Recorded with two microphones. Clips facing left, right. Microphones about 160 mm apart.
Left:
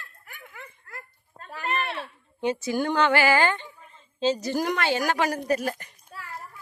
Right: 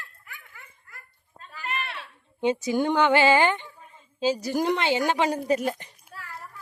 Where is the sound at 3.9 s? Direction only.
10° right (ahead or behind).